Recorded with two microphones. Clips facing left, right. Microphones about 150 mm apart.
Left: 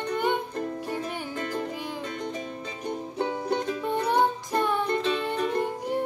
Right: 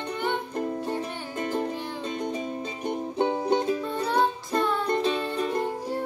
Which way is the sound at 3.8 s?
15° left (ahead or behind).